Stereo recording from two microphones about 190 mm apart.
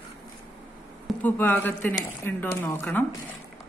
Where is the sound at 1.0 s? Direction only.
10° left (ahead or behind).